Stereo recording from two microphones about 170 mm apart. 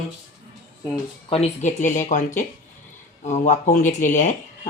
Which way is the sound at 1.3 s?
40° left (ahead or behind).